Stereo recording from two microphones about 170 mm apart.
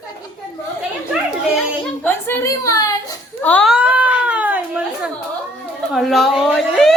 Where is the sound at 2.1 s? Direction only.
15° left (ahead or behind).